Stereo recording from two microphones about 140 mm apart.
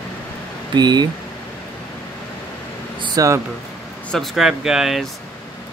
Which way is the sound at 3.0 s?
25° right (ahead or behind).